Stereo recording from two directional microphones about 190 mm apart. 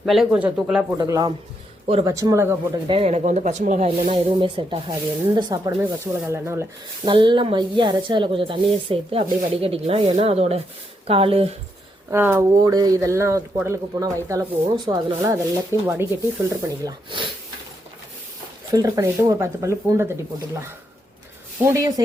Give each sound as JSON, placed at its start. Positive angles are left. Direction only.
{"t": 0.0, "sound": "speech", "side_deg": 0}
{"t": 0.9, "sound": "speech", "side_deg": -20}
{"t": 2.8, "sound": "speech", "side_deg": -30}
{"t": 7.0, "sound": "speech", "side_deg": -25}
{"t": 12.1, "sound": "speech", "side_deg": -10}
{"t": 18.7, "sound": "speech", "side_deg": -20}
{"t": 21.6, "sound": "speech", "side_deg": -15}